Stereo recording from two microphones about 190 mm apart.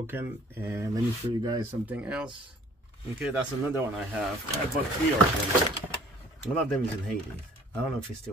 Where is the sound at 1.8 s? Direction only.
5° right (ahead or behind).